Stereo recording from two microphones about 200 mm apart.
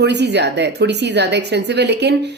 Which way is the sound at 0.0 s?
55° right (ahead or behind).